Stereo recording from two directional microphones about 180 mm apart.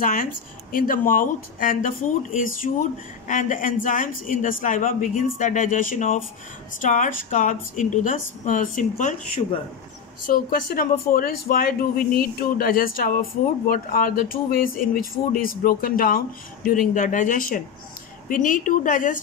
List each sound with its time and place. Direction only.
0.0 s speech: 50° left (ahead or behind)